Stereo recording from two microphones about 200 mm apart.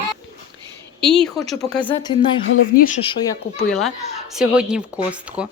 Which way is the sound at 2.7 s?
40° left (ahead or behind).